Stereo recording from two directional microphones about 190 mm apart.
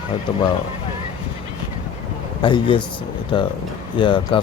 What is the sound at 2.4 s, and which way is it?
Speech, 25° left (ahead or behind).